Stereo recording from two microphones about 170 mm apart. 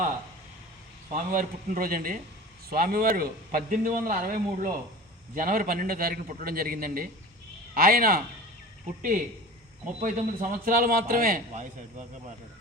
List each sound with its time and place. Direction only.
1.1 s a man's voice: 50° right (ahead or behind)